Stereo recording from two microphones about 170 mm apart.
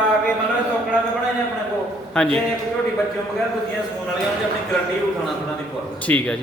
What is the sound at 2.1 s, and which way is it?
Speech, 5° left (ahead or behind).